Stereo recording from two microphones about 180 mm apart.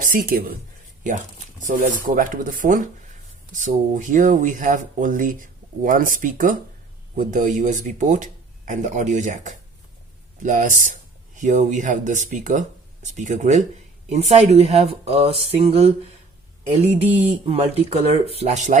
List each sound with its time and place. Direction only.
0.0 s speech: 50° right (ahead or behind)
1.6 s speech: 45° right (ahead or behind)
17.0 s speech: 35° right (ahead or behind)